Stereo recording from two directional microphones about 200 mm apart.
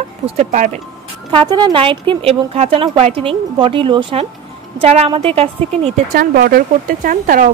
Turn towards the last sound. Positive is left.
turn(degrees=-40)  # may be behind; listen again after turning